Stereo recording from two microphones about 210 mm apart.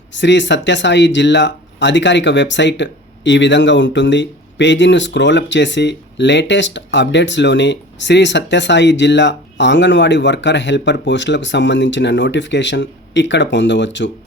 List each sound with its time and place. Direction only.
0.1 s speech: 60° left (ahead or behind)